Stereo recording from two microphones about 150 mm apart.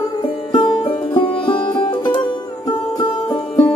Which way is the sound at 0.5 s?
35° left (ahead or behind).